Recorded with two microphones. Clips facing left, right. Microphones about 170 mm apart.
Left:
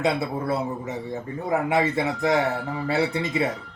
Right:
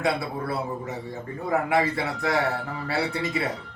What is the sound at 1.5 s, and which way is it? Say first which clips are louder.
A man's voice: left 1 dB; 20° left (ahead or behind).